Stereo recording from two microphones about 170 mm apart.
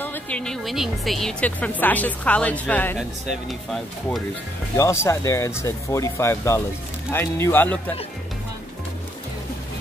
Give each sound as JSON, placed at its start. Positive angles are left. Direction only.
{"t": 0.0, "sound": "a woman's voice", "side_deg": 10}
{"t": 3.0, "sound": "speech", "side_deg": 0}
{"t": 4.7, "sound": "a woman's voice", "side_deg": 15}